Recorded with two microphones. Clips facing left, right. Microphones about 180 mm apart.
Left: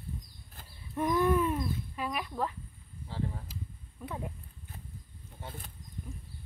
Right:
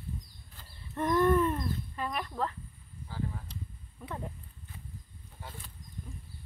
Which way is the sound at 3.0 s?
25° left (ahead or behind).